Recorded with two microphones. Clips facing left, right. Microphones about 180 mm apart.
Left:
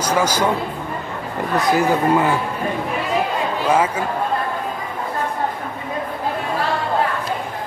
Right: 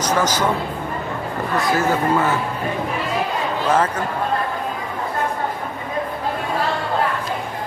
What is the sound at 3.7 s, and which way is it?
Speech, 10° left (ahead or behind).